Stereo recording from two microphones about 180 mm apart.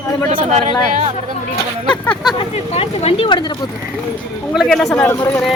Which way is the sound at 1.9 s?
5° left (ahead or behind).